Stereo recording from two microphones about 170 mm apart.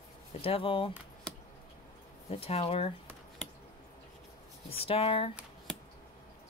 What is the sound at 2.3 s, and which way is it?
Speech, 35° left (ahead or behind).